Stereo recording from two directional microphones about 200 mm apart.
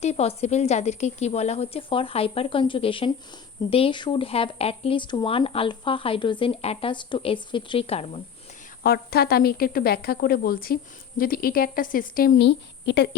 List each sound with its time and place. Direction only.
0.0 s speech: 30° left (ahead or behind)
8.8 s a woman's voice: 50° left (ahead or behind)